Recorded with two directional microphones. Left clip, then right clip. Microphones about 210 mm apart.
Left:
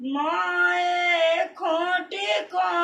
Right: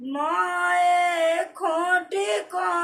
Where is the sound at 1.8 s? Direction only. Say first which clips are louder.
Right 2 dB; 20° right (ahead or behind).